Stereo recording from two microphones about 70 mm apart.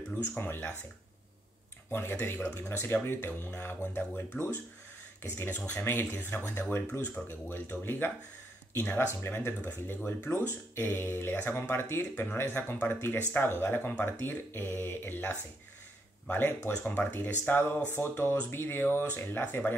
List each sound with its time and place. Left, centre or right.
0.4 s speech: left
1.9 s speech: left
4.3 s speech: centre
5.2 s speech: left